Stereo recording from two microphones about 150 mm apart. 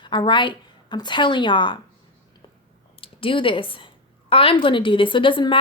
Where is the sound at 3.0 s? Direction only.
35° left (ahead or behind).